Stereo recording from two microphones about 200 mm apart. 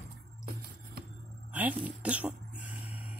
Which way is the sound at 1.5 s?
10° right (ahead or behind).